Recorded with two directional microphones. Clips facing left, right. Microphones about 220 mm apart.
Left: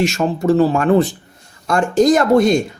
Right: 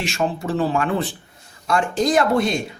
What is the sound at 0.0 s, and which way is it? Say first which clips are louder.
Speech: left 7 dB; 40° left (ahead or behind).